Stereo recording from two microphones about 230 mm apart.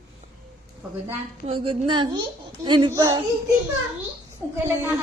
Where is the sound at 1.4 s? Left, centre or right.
Right.